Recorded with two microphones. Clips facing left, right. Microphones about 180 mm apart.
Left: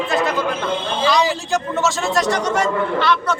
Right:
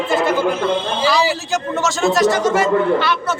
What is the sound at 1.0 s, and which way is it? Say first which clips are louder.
A man's voice: left 1 dB; 5° right (ahead or behind).